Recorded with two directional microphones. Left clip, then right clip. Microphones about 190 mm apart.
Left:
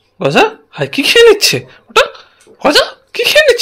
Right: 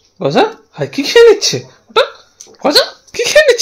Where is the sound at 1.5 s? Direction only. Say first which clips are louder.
Left 2 dB; centre (ahead or behind).